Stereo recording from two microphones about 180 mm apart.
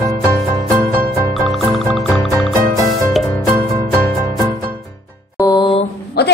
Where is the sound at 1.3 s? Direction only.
Centre (ahead or behind).